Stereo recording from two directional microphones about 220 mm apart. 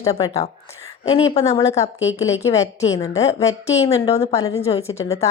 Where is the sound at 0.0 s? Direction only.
15° left (ahead or behind).